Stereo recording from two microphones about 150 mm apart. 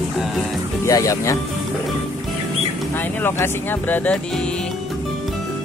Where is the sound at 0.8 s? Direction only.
20° left (ahead or behind).